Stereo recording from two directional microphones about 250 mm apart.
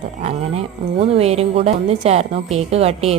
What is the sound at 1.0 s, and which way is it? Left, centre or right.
Speech, right.